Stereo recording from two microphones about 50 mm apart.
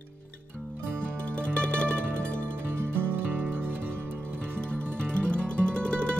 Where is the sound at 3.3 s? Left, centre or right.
Right.